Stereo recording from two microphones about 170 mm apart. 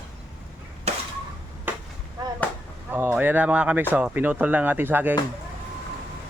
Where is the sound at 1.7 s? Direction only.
10° right (ahead or behind).